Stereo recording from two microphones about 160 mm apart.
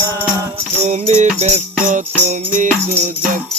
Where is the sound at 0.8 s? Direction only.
45° right (ahead or behind).